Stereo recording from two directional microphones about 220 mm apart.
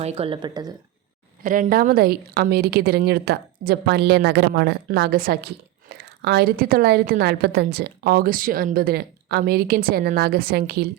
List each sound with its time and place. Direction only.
0.0 s speech: 30° right (ahead or behind)
1.5 s a woman's voice: 35° right (ahead or behind)
5.9 s a sound: 45° right (ahead or behind)
6.2 s a woman's voice: 45° right (ahead or behind)